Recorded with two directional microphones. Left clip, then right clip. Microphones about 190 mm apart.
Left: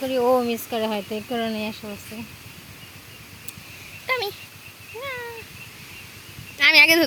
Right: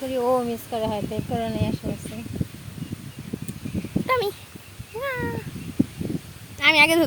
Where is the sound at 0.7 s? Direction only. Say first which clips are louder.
Left 1 dB; 25° left (ahead or behind).